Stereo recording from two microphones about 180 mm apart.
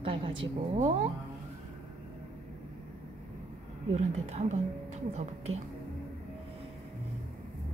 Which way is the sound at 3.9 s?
40° right (ahead or behind).